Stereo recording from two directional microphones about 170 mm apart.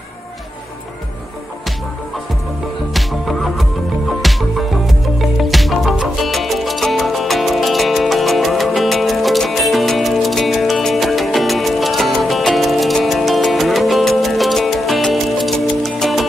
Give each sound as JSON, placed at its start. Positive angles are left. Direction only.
{"t": 2.9, "sound": "music", "side_deg": 0}